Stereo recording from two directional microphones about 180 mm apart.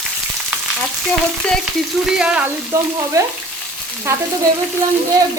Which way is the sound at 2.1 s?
5° right (ahead or behind).